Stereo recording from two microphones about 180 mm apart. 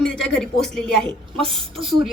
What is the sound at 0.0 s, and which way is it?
Speech, 5° left (ahead or behind).